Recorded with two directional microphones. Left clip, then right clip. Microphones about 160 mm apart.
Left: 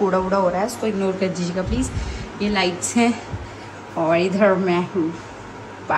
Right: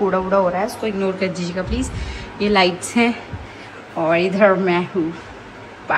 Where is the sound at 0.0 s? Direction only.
5° left (ahead or behind).